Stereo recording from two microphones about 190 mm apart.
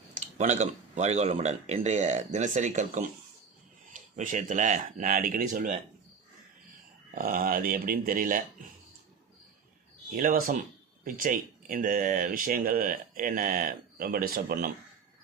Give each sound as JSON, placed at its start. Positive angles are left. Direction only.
{"t": 0.1, "sound": "speech", "side_deg": -35}
{"t": 7.1, "sound": "speech", "side_deg": -50}
{"t": 10.2, "sound": "speech", "side_deg": -50}